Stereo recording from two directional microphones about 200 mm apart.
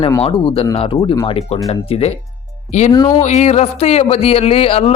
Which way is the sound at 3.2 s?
35° left (ahead or behind).